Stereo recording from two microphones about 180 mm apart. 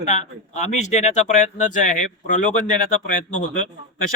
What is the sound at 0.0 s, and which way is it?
Speech, 40° left (ahead or behind).